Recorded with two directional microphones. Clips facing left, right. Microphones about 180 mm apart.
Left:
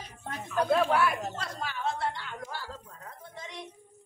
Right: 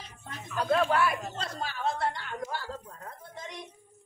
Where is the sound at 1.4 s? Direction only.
35° right (ahead or behind).